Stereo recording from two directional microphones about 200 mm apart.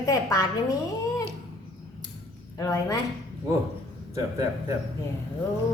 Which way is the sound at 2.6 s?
15° left (ahead or behind).